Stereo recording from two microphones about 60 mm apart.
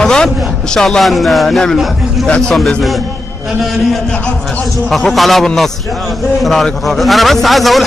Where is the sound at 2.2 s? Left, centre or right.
Centre.